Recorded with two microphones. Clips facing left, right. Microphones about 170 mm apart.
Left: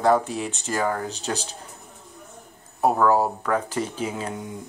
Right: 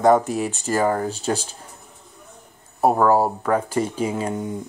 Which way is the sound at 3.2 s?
10° right (ahead or behind).